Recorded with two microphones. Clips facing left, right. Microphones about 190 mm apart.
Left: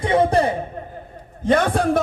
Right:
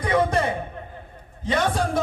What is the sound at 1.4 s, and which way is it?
Speech, 50° left (ahead or behind).